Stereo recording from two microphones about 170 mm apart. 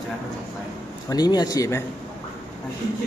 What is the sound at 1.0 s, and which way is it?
Speech, 25° left (ahead or behind).